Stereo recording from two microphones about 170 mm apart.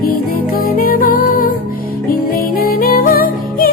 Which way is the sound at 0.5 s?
60° left (ahead or behind).